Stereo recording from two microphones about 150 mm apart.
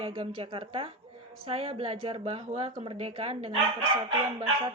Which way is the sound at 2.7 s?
35° right (ahead or behind).